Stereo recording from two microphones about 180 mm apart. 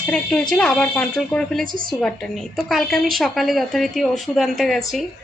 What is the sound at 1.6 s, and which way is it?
Speech, 50° right (ahead or behind).